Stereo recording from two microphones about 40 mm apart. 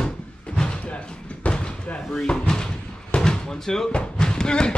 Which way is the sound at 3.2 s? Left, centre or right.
Centre.